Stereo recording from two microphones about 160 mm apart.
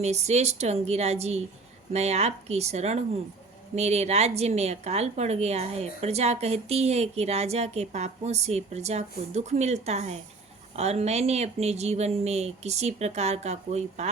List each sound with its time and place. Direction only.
0.0 s a woman's voice: 45° right (ahead or behind)